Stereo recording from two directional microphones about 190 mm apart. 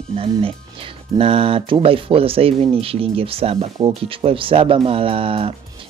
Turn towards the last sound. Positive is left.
turn(degrees=-30)  # may be behind; listen again after turning